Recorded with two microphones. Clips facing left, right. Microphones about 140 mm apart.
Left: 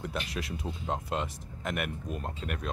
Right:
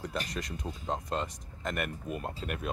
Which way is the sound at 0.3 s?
5° left (ahead or behind).